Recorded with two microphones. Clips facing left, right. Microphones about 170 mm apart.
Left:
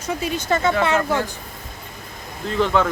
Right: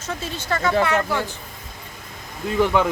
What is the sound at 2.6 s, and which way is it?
Speech, 15° right (ahead or behind).